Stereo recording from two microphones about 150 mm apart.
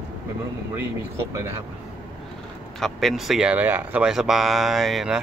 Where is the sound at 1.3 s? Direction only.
20° right (ahead or behind).